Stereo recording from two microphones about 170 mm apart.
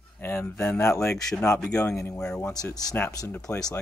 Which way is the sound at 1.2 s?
5° left (ahead or behind).